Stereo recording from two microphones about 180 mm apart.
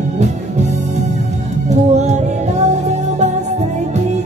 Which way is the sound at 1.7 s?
40° right (ahead or behind).